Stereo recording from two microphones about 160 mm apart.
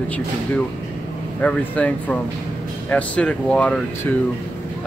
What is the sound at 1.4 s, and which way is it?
Speech, 10° left (ahead or behind).